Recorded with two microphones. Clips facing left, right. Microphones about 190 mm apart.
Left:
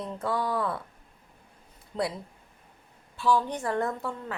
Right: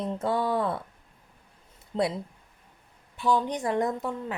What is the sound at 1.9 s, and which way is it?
Speech, 30° right (ahead or behind).